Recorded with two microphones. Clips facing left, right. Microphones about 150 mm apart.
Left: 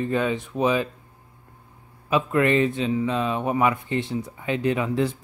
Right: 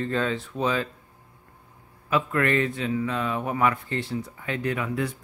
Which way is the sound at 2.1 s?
20° left (ahead or behind).